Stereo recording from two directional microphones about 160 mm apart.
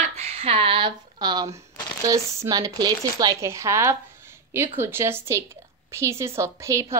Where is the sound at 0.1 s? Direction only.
40° right (ahead or behind).